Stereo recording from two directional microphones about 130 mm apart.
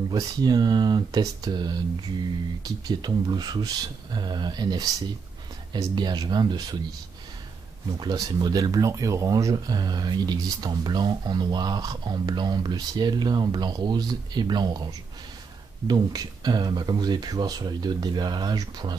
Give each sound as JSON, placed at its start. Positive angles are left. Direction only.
{"t": 0.1, "sound": "speech", "side_deg": -30}
{"t": 8.0, "sound": "speech", "side_deg": -30}